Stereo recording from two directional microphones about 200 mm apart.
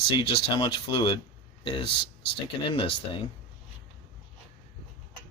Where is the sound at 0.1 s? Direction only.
25° left (ahead or behind).